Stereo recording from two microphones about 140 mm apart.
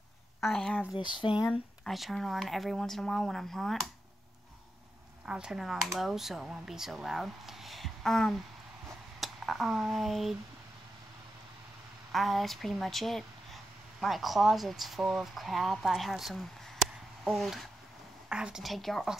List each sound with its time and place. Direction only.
0.4 s speech: centre (ahead or behind)
0.9 s speech: 35° left (ahead or behind)
1.3 s speech: 5° right (ahead or behind)
5.2 s speech: 5° right (ahead or behind)
12.1 s speech: centre (ahead or behind)